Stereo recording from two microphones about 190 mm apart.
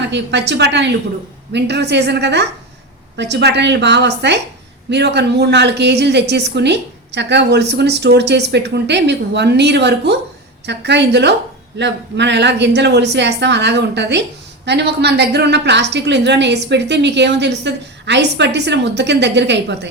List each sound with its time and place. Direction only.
0.1 s a woman's voice: 65° right (ahead or behind)